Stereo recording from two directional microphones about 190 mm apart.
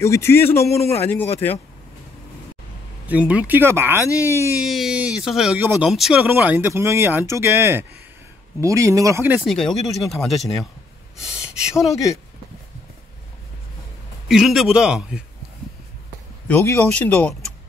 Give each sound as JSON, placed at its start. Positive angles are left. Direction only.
{"t": 0.0, "sound": "speech", "side_deg": 15}
{"t": 3.1, "sound": "speech", "side_deg": -5}
{"t": 4.6, "sound": "speech", "side_deg": 0}
{"t": 9.5, "sound": "speech", "side_deg": 0}
{"t": 14.2, "sound": "speech", "side_deg": 0}
{"t": 16.4, "sound": "speech", "side_deg": 10}